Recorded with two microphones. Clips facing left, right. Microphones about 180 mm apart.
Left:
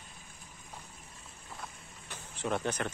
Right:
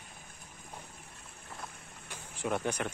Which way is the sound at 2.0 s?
10° right (ahead or behind).